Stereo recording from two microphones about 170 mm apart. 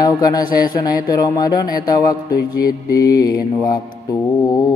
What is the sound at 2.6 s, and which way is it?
Mantra, 60° left (ahead or behind).